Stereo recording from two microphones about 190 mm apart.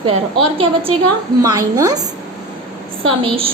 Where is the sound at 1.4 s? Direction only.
20° right (ahead or behind).